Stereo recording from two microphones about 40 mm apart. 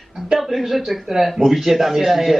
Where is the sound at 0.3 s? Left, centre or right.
Centre.